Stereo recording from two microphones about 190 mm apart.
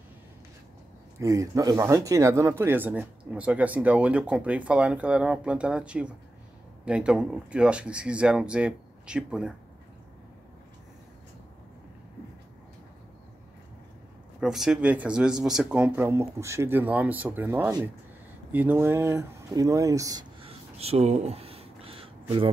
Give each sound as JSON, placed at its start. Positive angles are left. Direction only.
{"t": 1.2, "sound": "speech", "side_deg": -15}
{"t": 14.4, "sound": "speech", "side_deg": -5}
{"t": 20.4, "sound": "a sound", "side_deg": -30}